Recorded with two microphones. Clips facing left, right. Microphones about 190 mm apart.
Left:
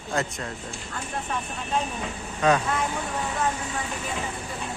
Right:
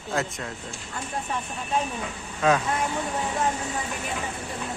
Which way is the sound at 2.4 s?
Centre (ahead or behind).